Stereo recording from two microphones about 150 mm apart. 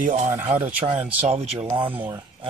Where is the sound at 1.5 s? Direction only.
30° right (ahead or behind).